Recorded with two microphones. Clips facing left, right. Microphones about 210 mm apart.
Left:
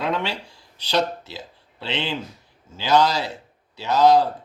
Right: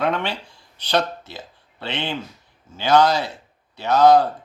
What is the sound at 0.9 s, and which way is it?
A man's voice, 55° right (ahead or behind).